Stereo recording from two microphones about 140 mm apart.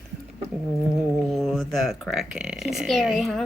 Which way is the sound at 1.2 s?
Centre (ahead or behind).